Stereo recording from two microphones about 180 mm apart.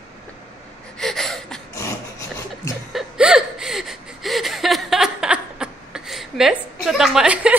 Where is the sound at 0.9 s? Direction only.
Centre (ahead or behind).